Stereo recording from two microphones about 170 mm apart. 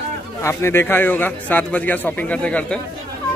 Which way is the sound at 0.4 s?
15° left (ahead or behind).